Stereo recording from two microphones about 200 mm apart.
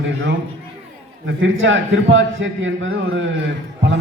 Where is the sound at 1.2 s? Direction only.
70° right (ahead or behind).